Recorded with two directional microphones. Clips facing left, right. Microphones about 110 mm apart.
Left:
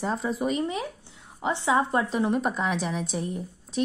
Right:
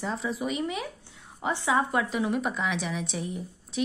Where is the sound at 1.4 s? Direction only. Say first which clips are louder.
Left 2 dB; 20° left (ahead or behind); by 3.8 s 40° left (ahead or behind).